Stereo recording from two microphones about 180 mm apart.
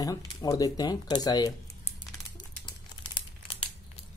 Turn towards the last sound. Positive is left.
turn(degrees=25)  # may be behind; listen again after turning